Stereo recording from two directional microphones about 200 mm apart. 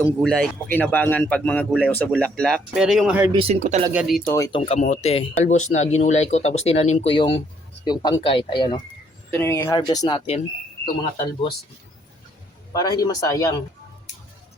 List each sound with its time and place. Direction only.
0.2 s speech: 5° left (ahead or behind)
3.3 s speech: 35° right (ahead or behind)
3.9 s speech: centre (ahead or behind)
4.3 s speech: 15° left (ahead or behind)
4.6 s speech: 35° left (ahead or behind)
9.3 s speech: 10° left (ahead or behind); by 10.4 s 25° left (ahead or behind)
12.7 s speech: 20° left (ahead or behind)